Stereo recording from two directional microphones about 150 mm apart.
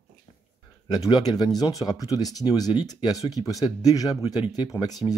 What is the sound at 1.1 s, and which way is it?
Speech, 25° left (ahead or behind).